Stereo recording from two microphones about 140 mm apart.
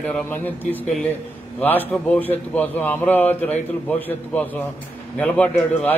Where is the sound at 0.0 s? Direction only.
10° left (ahead or behind).